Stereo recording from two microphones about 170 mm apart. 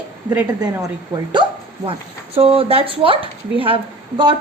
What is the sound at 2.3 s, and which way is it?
Speech, 35° right (ahead or behind).